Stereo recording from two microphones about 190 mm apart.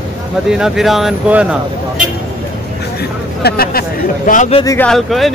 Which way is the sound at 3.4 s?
55° left (ahead or behind).